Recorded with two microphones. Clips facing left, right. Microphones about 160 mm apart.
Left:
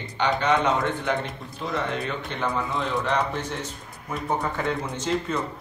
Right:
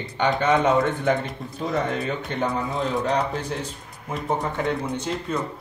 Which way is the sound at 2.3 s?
40° right (ahead or behind).